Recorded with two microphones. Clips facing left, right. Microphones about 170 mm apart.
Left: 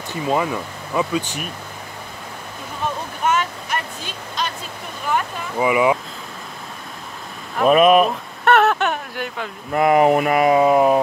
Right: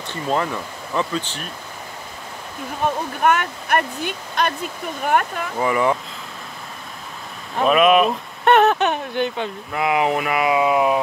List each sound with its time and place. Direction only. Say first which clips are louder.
0.1 s speech: left 2 dB; 10° left (ahead or behind)
3.3 s speech: right 2 dB; 60° right (ahead or behind)
5.6 s speech: left 2 dB; 10° left (ahead or behind)
7.6 s speech: left 2 dB; 40° left (ahead or behind)
8.5 s a sound: right 1 dB; 20° right (ahead or behind)
9.7 s speech: left 6 dB; 45° left (ahead or behind)